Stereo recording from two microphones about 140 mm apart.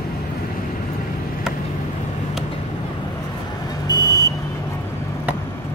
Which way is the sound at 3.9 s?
30° left (ahead or behind).